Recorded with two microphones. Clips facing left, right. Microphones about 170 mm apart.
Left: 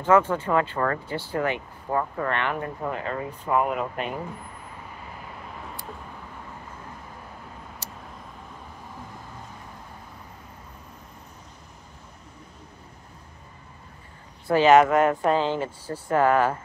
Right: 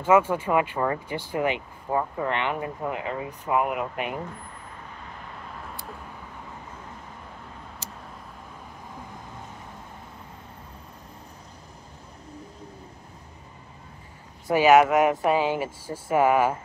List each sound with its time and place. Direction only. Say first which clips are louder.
0.0 s speech: even; 10° right (ahead or behind)
14.5 s speech: left 1 dB; 10° right (ahead or behind)